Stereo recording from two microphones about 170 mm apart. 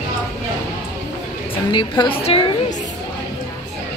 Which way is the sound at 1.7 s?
30° left (ahead or behind).